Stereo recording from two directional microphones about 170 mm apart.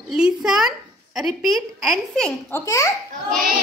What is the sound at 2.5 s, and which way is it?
Speech, 20° left (ahead or behind).